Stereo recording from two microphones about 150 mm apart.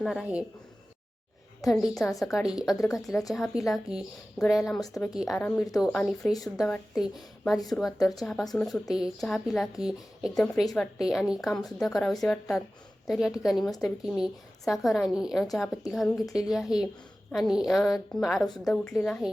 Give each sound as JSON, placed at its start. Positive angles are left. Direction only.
{"t": 0.0, "sound": "a woman's voice", "side_deg": 0}
{"t": 1.6, "sound": "a woman's voice", "side_deg": 0}
{"t": 5.4, "sound": "a woman's voice", "side_deg": 10}
{"t": 7.9, "sound": "speech", "side_deg": 25}
{"t": 8.2, "sound": "a woman's voice", "side_deg": 0}
{"t": 10.4, "sound": "a woman's voice", "side_deg": 5}